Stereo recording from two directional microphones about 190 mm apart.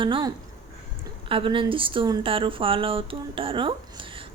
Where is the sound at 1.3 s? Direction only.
25° right (ahead or behind).